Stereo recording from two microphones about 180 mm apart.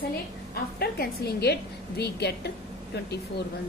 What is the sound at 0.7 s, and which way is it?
A woman's voice, 60° left (ahead or behind).